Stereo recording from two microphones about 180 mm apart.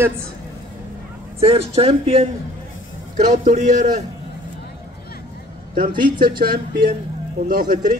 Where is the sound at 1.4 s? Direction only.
35° right (ahead or behind).